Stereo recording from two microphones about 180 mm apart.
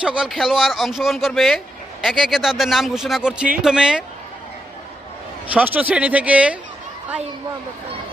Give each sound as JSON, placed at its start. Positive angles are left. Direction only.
{"t": 0.0, "sound": "speech", "side_deg": -5}
{"t": 5.5, "sound": "speech", "side_deg": -10}